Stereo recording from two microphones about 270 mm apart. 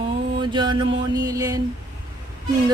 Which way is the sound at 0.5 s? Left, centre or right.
Centre.